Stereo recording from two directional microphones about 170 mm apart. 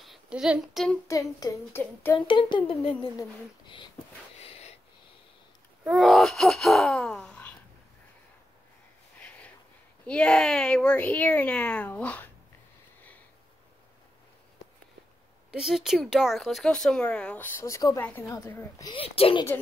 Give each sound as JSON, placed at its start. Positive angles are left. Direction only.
{"t": 0.0, "sound": "speech", "side_deg": 0}
{"t": 1.0, "sound": "speech", "side_deg": 20}
{"t": 2.1, "sound": "speech", "side_deg": 30}
{"t": 5.9, "sound": "gasp", "side_deg": -5}
{"t": 10.0, "sound": "speech", "side_deg": 5}
{"t": 15.5, "sound": "speech", "side_deg": 0}
{"t": 18.0, "sound": "speech", "side_deg": 10}
{"t": 18.9, "sound": "speech", "side_deg": 35}